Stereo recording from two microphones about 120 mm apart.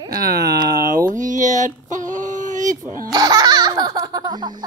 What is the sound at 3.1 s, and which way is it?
Laughter, 35° right (ahead or behind).